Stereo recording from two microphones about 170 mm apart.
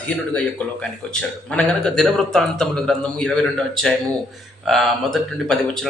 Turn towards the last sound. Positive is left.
turn(degrees=0)  # may be behind; listen again after turning